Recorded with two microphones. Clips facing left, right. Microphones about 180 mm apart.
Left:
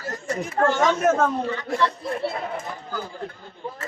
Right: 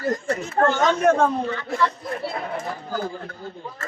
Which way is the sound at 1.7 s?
25° left (ahead or behind).